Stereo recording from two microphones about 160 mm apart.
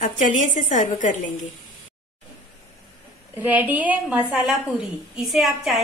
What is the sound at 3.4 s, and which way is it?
A woman's voice, 10° right (ahead or behind).